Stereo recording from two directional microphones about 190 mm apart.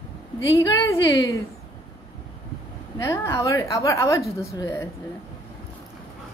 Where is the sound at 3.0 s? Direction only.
15° left (ahead or behind).